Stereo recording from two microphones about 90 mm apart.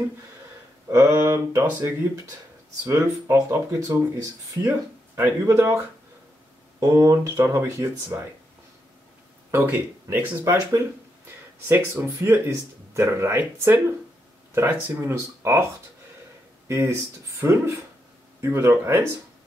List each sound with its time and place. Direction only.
0.8 s speech: 30° right (ahead or behind)
2.9 s speech: 30° right (ahead or behind)
9.5 s speech: 20° right (ahead or behind)
10.4 s speech: 35° right (ahead or behind)
16.6 s speech: 30° right (ahead or behind)